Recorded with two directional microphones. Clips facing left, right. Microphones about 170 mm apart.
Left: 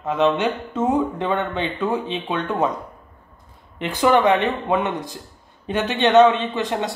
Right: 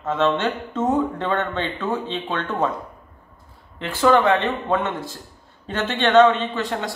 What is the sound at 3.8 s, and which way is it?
Speech, 15° left (ahead or behind).